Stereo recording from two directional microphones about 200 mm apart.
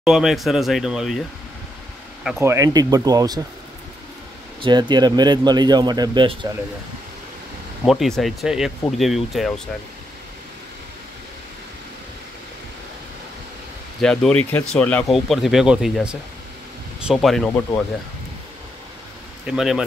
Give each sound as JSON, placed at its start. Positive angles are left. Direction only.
{"t": 0.0, "sound": "speech", "side_deg": 0}
{"t": 2.4, "sound": "speech", "side_deg": -15}
{"t": 4.6, "sound": "speech", "side_deg": -25}
{"t": 7.8, "sound": "speech", "side_deg": 0}
{"t": 14.0, "sound": "speech", "side_deg": 5}
{"t": 19.4, "sound": "speech", "side_deg": 0}